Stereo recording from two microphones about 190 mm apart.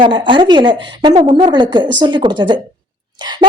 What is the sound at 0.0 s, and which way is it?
A woman's voice, 25° right (ahead or behind).